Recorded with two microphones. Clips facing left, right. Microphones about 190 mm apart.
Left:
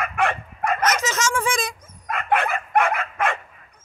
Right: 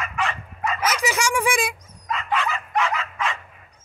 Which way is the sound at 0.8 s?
10° right (ahead or behind).